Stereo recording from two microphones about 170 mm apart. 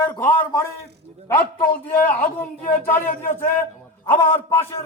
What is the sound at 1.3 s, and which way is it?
A man's voice, 10° left (ahead or behind).